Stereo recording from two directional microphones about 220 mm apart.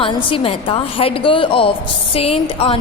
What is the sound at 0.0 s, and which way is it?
A woman's voice, 25° left (ahead or behind).